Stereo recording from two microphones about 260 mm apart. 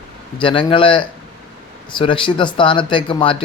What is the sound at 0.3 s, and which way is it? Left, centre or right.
Speech, centre.